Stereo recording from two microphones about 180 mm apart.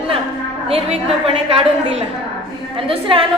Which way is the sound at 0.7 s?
35° right (ahead or behind).